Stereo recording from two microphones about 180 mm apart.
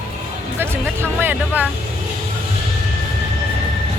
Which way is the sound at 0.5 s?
10° right (ahead or behind).